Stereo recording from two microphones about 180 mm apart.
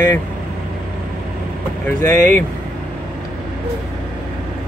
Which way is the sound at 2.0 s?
15° left (ahead or behind).